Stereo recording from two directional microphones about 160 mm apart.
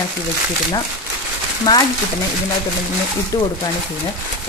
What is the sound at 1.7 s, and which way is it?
Speech, 25° left (ahead or behind).